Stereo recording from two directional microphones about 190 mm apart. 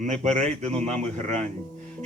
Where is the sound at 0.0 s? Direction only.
40° right (ahead or behind).